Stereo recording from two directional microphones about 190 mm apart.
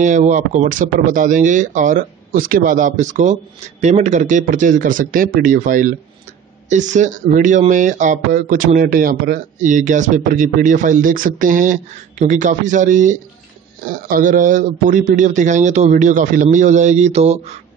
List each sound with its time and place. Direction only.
0.0 s speech: 40° right (ahead or behind)